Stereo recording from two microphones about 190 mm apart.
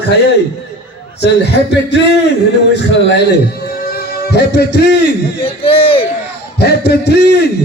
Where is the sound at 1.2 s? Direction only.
65° left (ahead or behind).